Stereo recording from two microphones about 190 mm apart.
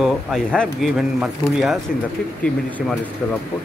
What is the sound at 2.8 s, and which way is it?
Speech, centre (ahead or behind).